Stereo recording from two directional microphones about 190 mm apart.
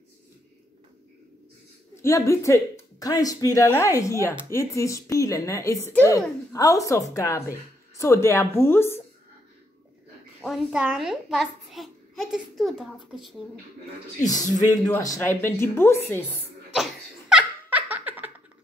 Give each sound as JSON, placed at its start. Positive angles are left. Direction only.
{"t": 2.0, "sound": "speech", "side_deg": 15}
{"t": 10.4, "sound": "a child's voice", "side_deg": -5}
{"t": 14.7, "sound": "speech", "side_deg": 20}
{"t": 16.7, "sound": "laughter", "side_deg": -5}